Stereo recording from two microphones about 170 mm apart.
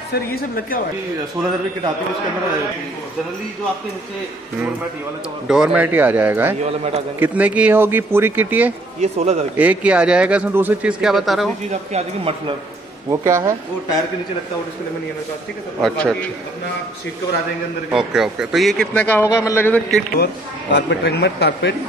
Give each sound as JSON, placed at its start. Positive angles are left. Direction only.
{"t": 0.1, "sound": "a woman's voice", "side_deg": 60}
{"t": 5.5, "sound": "speech", "side_deg": -5}
{"t": 9.0, "sound": "speech", "side_deg": -40}
{"t": 9.6, "sound": "speech", "side_deg": -5}
{"t": 11.7, "sound": "speech", "side_deg": -40}
{"t": 13.1, "sound": "speech", "side_deg": -20}
{"t": 15.8, "sound": "a man's voice", "side_deg": 5}
{"t": 17.9, "sound": "a man's voice", "side_deg": -5}
{"t": 20.7, "sound": "a man's voice", "side_deg": 90}